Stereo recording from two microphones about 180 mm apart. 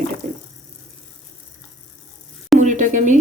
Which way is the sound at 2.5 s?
45° right (ahead or behind).